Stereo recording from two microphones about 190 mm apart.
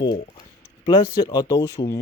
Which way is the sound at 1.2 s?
20° left (ahead or behind).